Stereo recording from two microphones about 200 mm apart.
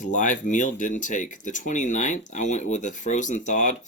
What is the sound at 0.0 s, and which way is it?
Speech, 40° left (ahead or behind).